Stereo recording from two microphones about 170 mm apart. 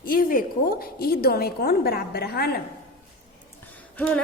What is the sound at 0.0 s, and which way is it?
A woman's voice, 55° left (ahead or behind).